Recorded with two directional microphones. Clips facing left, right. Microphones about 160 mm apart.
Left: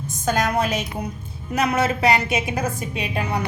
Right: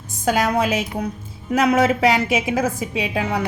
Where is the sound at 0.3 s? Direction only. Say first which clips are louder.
Right 3 dB; 90° right.